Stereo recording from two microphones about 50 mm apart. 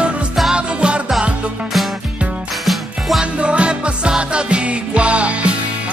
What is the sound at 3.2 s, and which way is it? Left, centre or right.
Music, right.